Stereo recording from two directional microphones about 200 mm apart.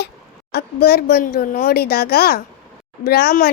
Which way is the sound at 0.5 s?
50° left (ahead or behind).